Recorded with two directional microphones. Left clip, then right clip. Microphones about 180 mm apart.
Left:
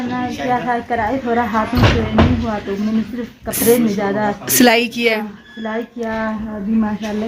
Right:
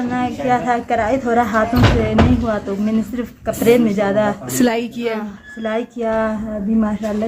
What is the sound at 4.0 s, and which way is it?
Speech, 25° right (ahead or behind).